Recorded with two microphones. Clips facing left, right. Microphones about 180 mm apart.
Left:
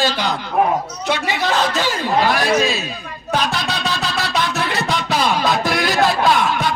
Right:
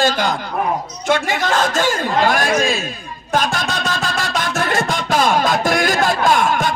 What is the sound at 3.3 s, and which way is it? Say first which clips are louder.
Music: right 2 dB; 45° right (ahead or behind).